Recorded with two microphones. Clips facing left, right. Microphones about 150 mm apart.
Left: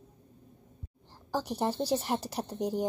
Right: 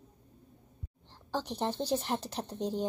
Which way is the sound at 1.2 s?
10° left (ahead or behind).